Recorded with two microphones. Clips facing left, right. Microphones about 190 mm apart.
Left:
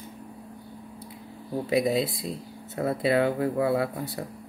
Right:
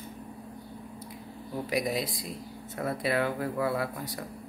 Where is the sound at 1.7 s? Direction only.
25° left (ahead or behind).